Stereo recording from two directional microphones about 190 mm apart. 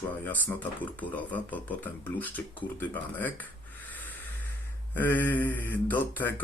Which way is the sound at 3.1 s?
10° left (ahead or behind).